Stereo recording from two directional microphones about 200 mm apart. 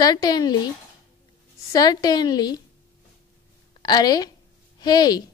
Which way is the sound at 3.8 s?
20° left (ahead or behind).